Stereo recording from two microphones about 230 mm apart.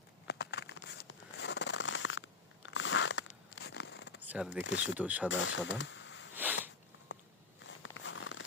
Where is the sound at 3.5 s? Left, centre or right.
Left.